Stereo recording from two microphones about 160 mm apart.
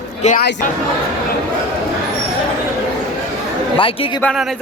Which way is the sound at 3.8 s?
35° left (ahead or behind).